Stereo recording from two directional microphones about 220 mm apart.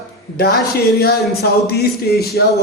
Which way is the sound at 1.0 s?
45° left (ahead or behind).